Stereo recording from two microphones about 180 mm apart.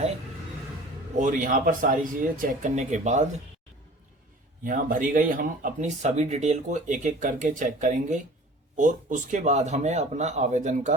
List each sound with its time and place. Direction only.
1.1 s speech: 45° right (ahead or behind)
4.6 s speech: 50° right (ahead or behind)